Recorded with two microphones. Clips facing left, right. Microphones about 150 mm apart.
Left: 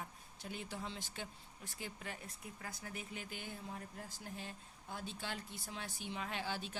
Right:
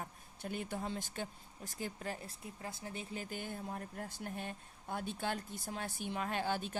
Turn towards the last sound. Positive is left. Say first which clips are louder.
# right 6 dB
turn(degrees=-50)  # may be behind; listen again after turning